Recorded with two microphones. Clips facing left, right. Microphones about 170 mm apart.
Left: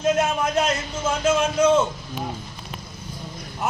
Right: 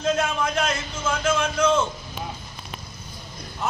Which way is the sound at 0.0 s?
20° left (ahead or behind).